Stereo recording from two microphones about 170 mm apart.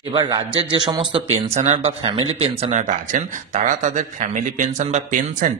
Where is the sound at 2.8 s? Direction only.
50° right (ahead or behind).